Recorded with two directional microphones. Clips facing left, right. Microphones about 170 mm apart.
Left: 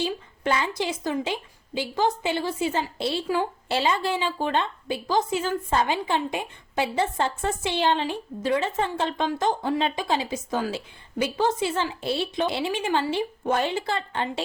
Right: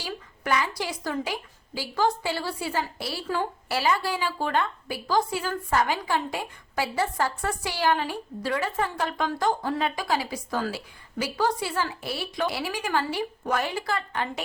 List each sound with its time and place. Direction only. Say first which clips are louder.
0.0 s a woman's voice: left 7 dB; 25° left (ahead or behind)